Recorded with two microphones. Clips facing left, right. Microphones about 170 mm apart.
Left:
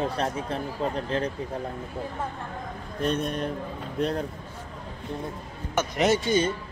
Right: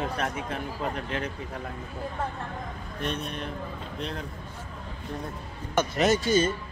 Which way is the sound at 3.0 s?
40° left (ahead or behind).